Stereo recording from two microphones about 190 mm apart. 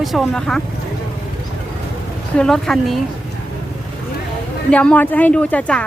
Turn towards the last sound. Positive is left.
turn(degrees=5)  # may be behind; listen again after turning